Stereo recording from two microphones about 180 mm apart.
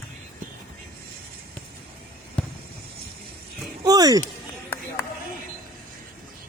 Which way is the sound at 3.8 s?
20° right (ahead or behind).